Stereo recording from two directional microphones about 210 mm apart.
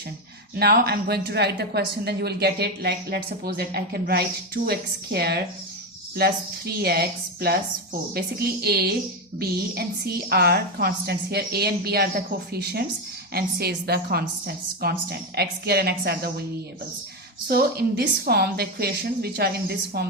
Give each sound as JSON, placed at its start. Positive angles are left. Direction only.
{"t": 0.5, "sound": "a woman's voice", "side_deg": -50}
{"t": 8.6, "sound": "a woman's voice", "side_deg": -50}
{"t": 17.5, "sound": "a woman's voice", "side_deg": -50}